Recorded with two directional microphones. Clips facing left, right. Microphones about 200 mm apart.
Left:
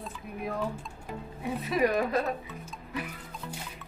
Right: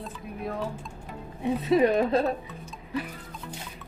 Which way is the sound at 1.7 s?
30° right (ahead or behind).